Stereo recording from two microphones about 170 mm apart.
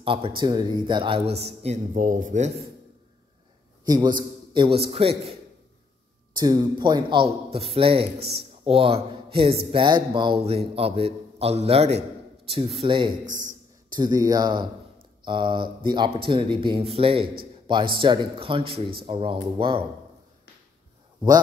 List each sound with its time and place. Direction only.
0.0 s a man's voice: 30° right (ahead or behind); by 2.5 s 45° right (ahead or behind)
3.8 s speech: 25° right (ahead or behind)
6.3 s speech: 20° right (ahead or behind)